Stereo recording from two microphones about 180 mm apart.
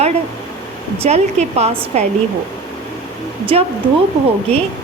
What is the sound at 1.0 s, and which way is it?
A woman's voice, 35° right (ahead or behind).